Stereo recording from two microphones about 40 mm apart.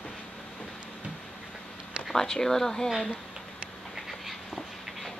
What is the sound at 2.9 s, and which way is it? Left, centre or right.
Speech, centre.